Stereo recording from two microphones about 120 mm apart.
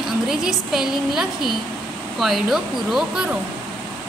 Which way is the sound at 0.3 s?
5° right (ahead or behind).